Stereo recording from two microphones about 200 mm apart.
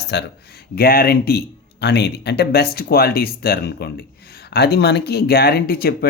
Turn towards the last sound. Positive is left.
turn(degrees=50)  # may be behind; listen again after turning